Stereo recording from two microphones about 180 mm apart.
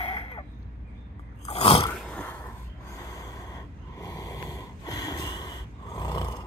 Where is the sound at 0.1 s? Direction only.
30° left (ahead or behind).